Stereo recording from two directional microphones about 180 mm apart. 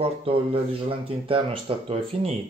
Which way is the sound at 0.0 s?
30° right (ahead or behind).